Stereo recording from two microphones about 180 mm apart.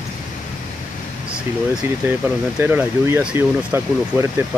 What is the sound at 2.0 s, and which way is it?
Speech, 10° right (ahead or behind).